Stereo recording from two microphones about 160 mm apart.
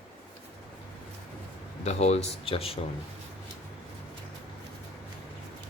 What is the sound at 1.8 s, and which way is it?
Speech, 40° left (ahead or behind).